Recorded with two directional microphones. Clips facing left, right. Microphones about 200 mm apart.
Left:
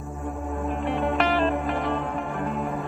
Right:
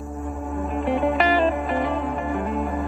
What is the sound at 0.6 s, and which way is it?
Music, centre (ahead or behind).